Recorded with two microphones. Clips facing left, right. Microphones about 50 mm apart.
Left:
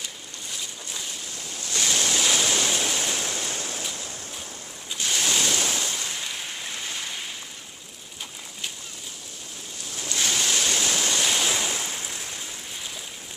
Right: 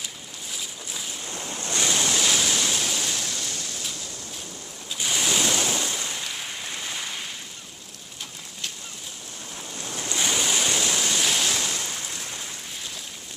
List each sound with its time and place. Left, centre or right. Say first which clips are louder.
0.0 s a sound: even; centre
1.3 s waves: right 4 dB; right
1.9 s waves: even; centre
3.3 s waves: left 2 dB; left
4.9 s ocean: even; centre
10.1 s waves: even; centre
11.0 s waves: even; centre